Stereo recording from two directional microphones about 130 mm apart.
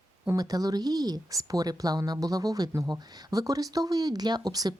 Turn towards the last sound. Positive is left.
turn(degrees=-30)  # may be behind; listen again after turning